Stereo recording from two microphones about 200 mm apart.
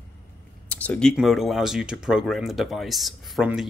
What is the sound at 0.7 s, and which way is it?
Speech, 5° left (ahead or behind).